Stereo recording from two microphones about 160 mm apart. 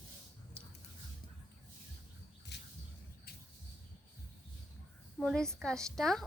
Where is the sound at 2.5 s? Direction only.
90° left.